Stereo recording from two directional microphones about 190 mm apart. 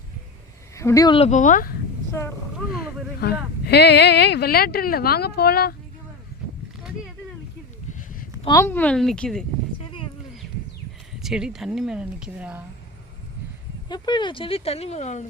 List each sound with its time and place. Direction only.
0.8 s speech: 15° left (ahead or behind); by 1.7 s 45° left (ahead or behind)
3.2 s speech: 60° left (ahead or behind)
8.4 s speech: 15° left (ahead or behind)
11.1 s speech: centre (ahead or behind)
13.8 s speech: 20° left (ahead or behind); by 15.3 s 35° left (ahead or behind)